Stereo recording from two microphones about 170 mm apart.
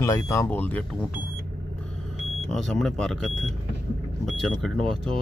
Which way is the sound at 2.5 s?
Centre (ahead or behind).